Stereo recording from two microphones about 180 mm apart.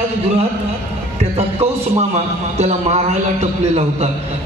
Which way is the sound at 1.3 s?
35° right (ahead or behind).